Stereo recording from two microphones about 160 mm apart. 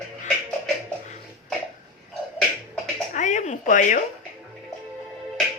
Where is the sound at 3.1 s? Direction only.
50° left (ahead or behind).